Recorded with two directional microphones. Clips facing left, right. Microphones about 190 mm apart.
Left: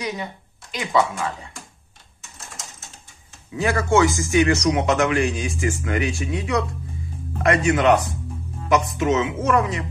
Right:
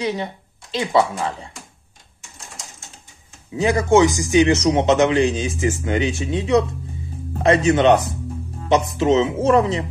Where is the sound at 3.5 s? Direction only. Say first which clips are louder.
Right 4 dB; 20° right (ahead or behind).